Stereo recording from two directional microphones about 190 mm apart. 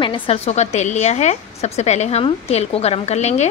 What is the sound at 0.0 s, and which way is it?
A woman's voice, 30° left (ahead or behind).